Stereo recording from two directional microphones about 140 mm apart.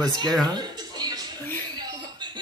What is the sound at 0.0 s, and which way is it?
Speech, 30° right (ahead or behind).